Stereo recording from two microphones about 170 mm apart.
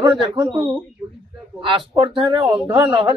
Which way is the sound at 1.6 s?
30° right (ahead or behind).